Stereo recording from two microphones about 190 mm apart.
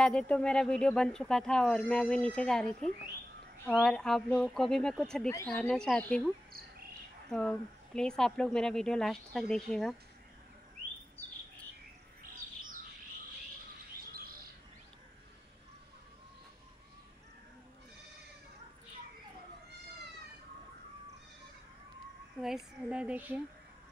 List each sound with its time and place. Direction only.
0.0 s speech: 5° left (ahead or behind)
12.2 s bird: 45° right (ahead or behind)
22.4 s speech: centre (ahead or behind)